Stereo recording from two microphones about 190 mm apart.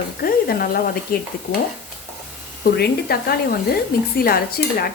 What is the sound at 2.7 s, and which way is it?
Speech, 55° left (ahead or behind).